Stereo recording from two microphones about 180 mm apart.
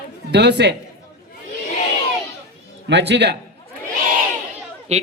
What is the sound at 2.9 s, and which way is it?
Speech, 75° right (ahead or behind).